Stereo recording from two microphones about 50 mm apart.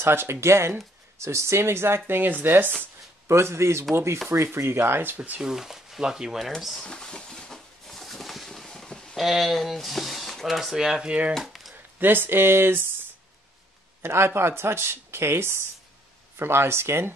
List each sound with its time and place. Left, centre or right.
0.0 s speech: right
3.3 s a man's voice: right
4.6 s speech: right
5.4 s speech: centre
6.8 s a sound: centre
9.1 s speech: centre
11.3 s a sound: centre
12.0 s speech: right
14.0 s speech: right